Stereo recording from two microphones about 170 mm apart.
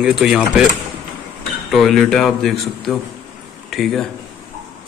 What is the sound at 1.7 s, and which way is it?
A man's voice, centre (ahead or behind).